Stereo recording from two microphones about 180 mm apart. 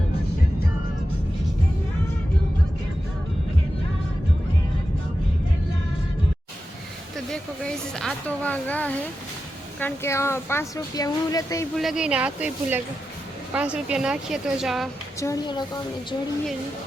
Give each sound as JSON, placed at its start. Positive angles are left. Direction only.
{"t": 7.3, "sound": "a sound", "side_deg": 5}
{"t": 9.8, "sound": "speech", "side_deg": 15}
{"t": 11.8, "sound": "speech", "side_deg": -5}
{"t": 15.2, "sound": "a woman's voice", "side_deg": 20}